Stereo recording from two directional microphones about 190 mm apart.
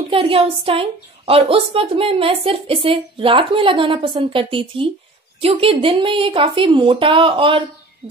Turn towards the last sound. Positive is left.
turn(degrees=-25)  # may be behind; listen again after turning